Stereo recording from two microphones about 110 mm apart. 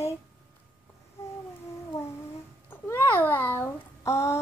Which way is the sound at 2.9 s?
20° left (ahead or behind).